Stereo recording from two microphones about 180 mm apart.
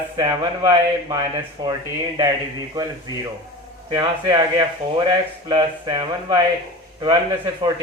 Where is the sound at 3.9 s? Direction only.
20° right (ahead or behind).